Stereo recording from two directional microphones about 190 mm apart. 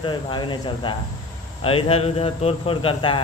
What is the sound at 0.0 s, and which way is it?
A man's voice, 25° left (ahead or behind).